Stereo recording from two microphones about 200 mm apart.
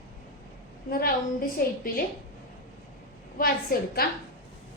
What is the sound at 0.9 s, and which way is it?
A woman's voice, 45° left (ahead or behind).